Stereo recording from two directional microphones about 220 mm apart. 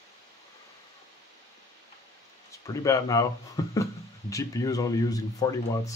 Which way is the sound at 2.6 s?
15° left (ahead or behind).